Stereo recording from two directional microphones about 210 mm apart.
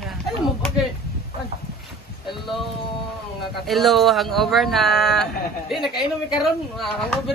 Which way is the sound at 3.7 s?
Centre (ahead or behind).